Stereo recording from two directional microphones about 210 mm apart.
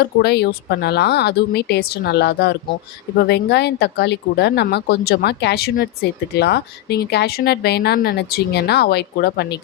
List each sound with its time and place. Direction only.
0.0 s speech: 50° left (ahead or behind)